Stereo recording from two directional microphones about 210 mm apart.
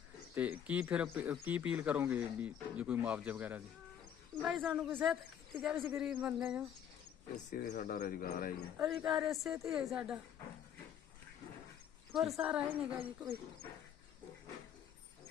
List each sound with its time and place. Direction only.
0.3 s speech: 5° right (ahead or behind)
7.5 s speech: 40° left (ahead or behind)
8.8 s speech: 5° right (ahead or behind)
12.3 s speech: 5° right (ahead or behind)